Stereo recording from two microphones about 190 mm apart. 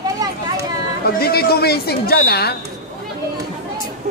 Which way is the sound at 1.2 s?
55° left (ahead or behind).